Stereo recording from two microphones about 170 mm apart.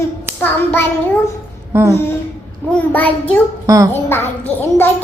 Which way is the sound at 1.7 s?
15° right (ahead or behind).